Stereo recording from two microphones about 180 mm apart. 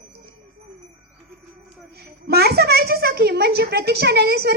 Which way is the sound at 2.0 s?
60° right (ahead or behind).